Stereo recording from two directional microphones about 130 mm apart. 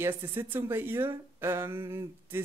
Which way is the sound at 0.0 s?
20° right (ahead or behind).